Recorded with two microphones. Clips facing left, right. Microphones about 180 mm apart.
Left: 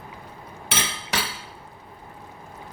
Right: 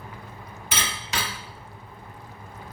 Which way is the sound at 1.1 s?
70° left (ahead or behind).